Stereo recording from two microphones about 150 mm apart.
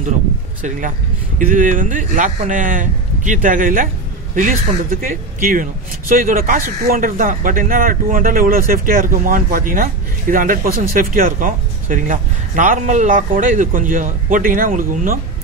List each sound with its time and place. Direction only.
0.6 s speech: 60° right (ahead or behind)